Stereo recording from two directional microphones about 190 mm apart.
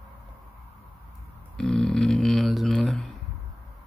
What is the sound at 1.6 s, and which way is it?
Speech, 5° left (ahead or behind).